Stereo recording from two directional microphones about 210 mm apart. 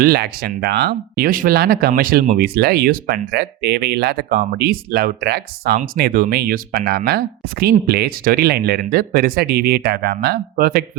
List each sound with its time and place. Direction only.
0.0 s speech: 50° right (ahead or behind)